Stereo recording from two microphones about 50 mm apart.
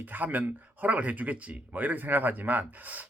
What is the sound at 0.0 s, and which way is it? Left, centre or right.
Speech, right.